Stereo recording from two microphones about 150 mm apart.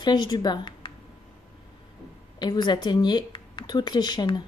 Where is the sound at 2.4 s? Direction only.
30° left (ahead or behind).